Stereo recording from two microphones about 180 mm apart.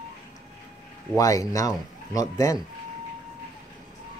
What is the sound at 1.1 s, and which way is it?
Speech, 20° left (ahead or behind).